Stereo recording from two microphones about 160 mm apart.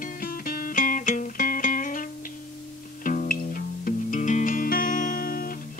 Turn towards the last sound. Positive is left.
turn(degrees=60)  # may be behind; listen again after turning